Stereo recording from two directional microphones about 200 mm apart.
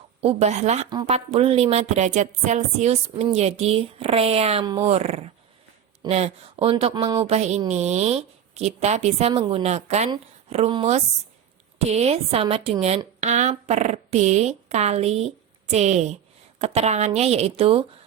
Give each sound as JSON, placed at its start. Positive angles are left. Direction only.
{"t": 0.2, "sound": "a woman's voice", "side_deg": -30}
{"t": 0.9, "sound": "a woman's voice", "side_deg": -20}
{"t": 4.6, "sound": "speech", "side_deg": -20}
{"t": 4.9, "sound": "a woman's voice", "side_deg": -30}